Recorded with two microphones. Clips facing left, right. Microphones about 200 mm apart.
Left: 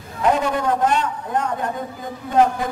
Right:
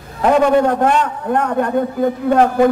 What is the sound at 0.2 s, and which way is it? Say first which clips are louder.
A man's voice: right 7 dB; 60° right (ahead or behind).